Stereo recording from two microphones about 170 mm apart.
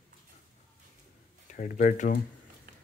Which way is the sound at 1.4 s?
50° left (ahead or behind).